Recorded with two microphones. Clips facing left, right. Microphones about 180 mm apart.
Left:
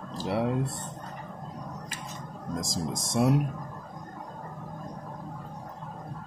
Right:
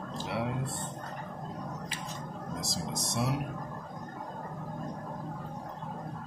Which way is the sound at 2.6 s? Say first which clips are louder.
Left 3 dB; 45° left (ahead or behind).